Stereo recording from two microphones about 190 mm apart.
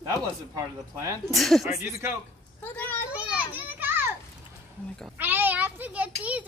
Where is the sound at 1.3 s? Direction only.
Centre (ahead or behind).